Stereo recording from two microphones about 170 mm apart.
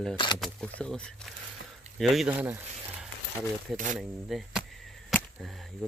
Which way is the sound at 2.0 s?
Centre (ahead or behind).